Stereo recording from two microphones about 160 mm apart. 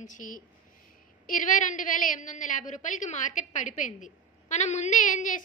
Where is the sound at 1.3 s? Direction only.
55° left (ahead or behind).